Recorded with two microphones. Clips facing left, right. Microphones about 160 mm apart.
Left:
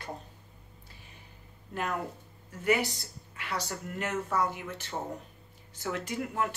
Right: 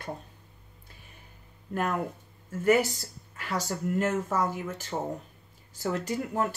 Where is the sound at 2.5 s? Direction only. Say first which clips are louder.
Right 5 dB; 45° right (ahead or behind).